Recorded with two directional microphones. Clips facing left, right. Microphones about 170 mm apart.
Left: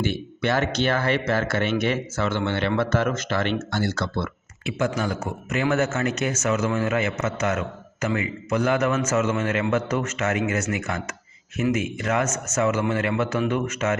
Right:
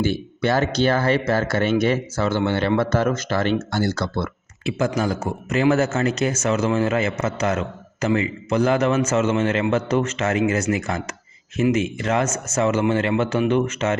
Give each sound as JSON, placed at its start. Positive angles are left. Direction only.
{"t": 0.0, "sound": "speech", "side_deg": -35}